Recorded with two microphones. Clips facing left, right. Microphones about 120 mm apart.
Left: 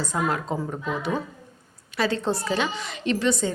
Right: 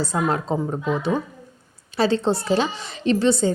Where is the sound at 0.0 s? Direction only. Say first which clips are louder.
Right 3 dB; 30° right (ahead or behind).